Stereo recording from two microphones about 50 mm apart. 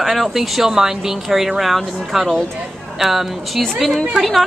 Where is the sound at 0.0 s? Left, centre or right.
Centre.